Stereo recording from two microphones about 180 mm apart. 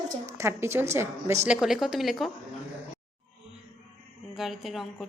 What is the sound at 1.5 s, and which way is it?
Speech, centre (ahead or behind).